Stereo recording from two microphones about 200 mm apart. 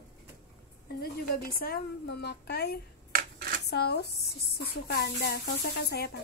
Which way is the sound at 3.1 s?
45° right (ahead or behind).